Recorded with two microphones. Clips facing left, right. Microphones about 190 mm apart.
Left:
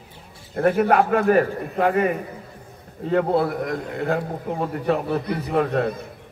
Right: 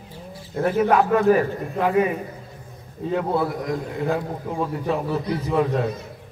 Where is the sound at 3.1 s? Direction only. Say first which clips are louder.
Left 3 dB; 55° left (ahead or behind).